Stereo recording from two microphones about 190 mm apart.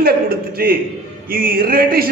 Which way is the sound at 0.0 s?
50° right (ahead or behind).